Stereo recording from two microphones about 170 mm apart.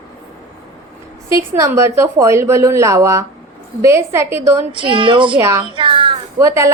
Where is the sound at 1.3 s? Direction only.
15° right (ahead or behind).